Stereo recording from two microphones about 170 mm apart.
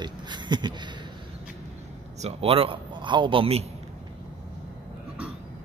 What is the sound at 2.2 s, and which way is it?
A man's voice, 35° right (ahead or behind).